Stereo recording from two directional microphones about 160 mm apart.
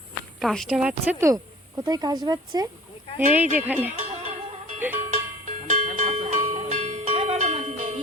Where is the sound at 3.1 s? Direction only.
10° right (ahead or behind).